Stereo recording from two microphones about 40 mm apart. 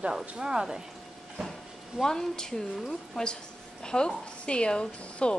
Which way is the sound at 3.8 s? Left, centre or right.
Left.